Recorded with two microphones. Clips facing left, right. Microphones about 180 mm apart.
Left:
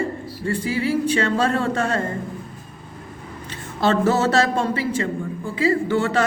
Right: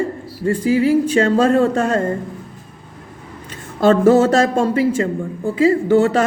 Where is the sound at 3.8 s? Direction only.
45° right (ahead or behind).